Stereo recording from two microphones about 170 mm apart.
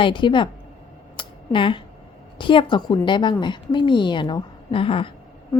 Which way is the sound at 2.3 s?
30° left (ahead or behind).